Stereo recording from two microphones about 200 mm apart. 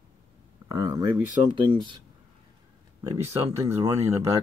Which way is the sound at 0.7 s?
15° right (ahead or behind).